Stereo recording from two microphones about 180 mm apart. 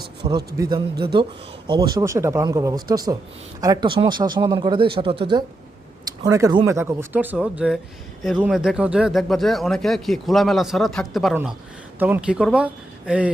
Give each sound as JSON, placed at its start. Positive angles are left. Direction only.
{"t": 0.3, "sound": "speech", "side_deg": -20}
{"t": 6.2, "sound": "speech", "side_deg": -20}